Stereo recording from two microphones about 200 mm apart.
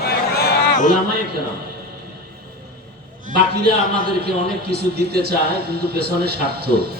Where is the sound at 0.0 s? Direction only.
50° left (ahead or behind).